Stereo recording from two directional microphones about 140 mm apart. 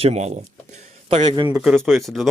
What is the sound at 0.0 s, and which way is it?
Speech, 50° right (ahead or behind).